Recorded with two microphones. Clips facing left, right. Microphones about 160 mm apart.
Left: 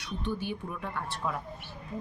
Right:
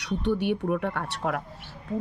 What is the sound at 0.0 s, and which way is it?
Speech, 70° right (ahead or behind).